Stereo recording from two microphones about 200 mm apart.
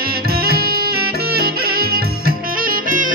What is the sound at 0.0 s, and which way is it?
Music, 50° right (ahead or behind).